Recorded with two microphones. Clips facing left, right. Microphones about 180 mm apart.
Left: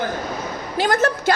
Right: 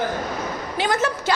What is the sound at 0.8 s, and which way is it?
Speech, 45° left (ahead or behind).